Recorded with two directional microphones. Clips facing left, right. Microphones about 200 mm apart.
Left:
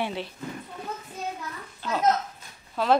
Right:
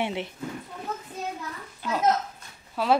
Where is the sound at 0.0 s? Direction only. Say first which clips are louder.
Right 1 dB; 20° right (ahead or behind).